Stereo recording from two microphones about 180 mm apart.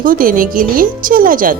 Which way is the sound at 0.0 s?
50° right (ahead or behind).